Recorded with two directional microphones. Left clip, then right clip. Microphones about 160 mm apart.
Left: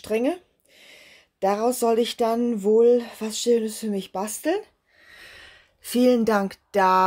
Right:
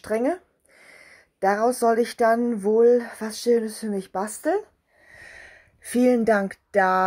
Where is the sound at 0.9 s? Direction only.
20° left (ahead or behind).